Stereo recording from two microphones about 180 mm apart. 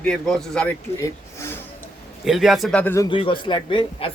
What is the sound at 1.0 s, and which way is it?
Speech, 15° left (ahead or behind).